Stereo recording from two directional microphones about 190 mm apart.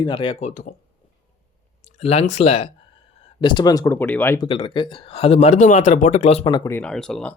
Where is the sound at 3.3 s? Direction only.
25° left (ahead or behind).